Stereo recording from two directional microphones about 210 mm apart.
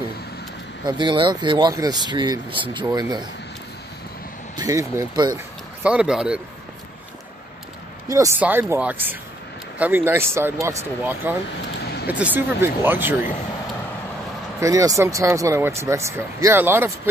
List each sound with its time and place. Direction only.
0.8 s speech: 20° right (ahead or behind)
4.6 s speech: 15° right (ahead or behind)
5.9 s speech: 5° right (ahead or behind)
8.1 s speech: 15° right (ahead or behind)
11.8 s vehicle: 50° left (ahead or behind)
12.1 s speech: 5° right (ahead or behind)
14.6 s speech: 15° right (ahead or behind)